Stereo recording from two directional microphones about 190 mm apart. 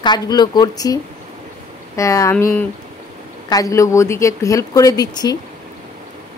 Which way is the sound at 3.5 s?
20° left (ahead or behind).